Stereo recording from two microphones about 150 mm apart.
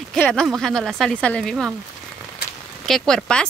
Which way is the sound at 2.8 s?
5° left (ahead or behind).